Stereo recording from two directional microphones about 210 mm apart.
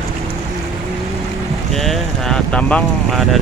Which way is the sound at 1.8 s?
Centre (ahead or behind).